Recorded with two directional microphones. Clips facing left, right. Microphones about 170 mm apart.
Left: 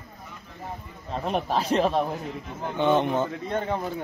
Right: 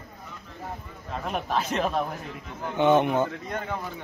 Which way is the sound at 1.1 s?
35° left (ahead or behind).